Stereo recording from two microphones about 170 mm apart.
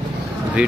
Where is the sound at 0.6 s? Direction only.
5° right (ahead or behind).